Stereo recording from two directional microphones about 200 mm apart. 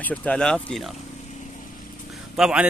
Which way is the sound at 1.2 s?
35° left (ahead or behind).